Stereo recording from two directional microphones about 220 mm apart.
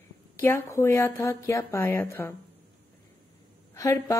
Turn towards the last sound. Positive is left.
turn(degrees=15)  # may be behind; listen again after turning